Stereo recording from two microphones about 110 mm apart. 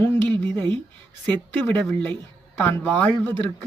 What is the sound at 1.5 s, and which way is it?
Speech, 15° left (ahead or behind).